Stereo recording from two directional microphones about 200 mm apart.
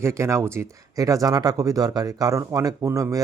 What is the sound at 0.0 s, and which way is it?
Speech, 15° right (ahead or behind).